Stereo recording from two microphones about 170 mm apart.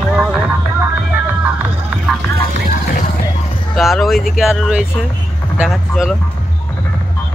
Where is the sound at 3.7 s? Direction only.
Centre (ahead or behind).